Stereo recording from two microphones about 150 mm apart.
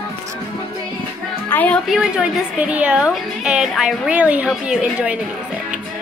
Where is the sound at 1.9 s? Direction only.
5° right (ahead or behind).